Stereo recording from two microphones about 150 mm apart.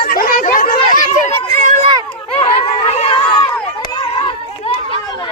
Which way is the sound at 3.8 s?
35° left (ahead or behind).